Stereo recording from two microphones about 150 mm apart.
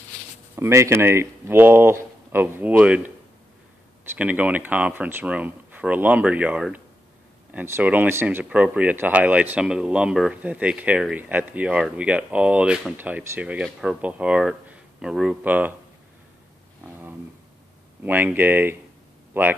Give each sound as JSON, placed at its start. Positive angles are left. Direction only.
{"t": 0.6, "sound": "speech", "side_deg": -15}
{"t": 4.2, "sound": "speech", "side_deg": -10}
{"t": 18.0, "sound": "speech", "side_deg": -10}